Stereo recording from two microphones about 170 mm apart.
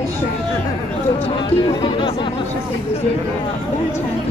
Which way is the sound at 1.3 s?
25° left (ahead or behind).